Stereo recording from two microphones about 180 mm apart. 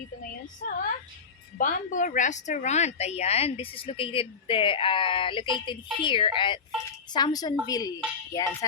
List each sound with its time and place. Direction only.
1.5 s a woman's voice: 45° left (ahead or behind); by 8.4 s 20° left (ahead or behind)